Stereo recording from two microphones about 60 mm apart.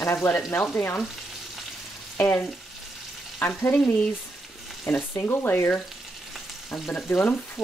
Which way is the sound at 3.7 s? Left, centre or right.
Left.